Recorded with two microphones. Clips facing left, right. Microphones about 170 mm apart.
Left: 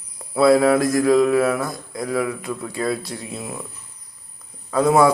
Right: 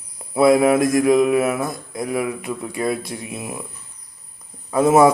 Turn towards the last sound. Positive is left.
turn(degrees=-20)  # may be behind; listen again after turning